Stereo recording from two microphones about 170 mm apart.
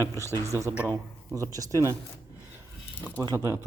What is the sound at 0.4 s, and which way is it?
Speech, 15° right (ahead or behind).